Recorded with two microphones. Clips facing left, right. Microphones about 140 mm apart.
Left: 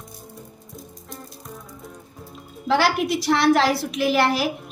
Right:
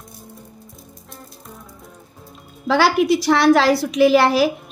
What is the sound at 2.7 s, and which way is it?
A woman's voice, 90° right.